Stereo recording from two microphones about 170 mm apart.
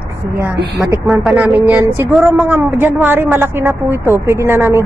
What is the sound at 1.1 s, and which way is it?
A woman's voice, 5° right (ahead or behind).